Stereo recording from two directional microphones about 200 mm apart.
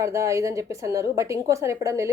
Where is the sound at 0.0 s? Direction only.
15° right (ahead or behind).